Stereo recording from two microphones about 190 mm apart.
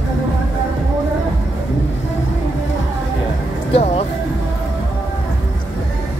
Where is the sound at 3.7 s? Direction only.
30° left (ahead or behind).